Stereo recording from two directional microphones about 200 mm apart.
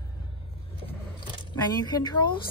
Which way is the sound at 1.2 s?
25° left (ahead or behind).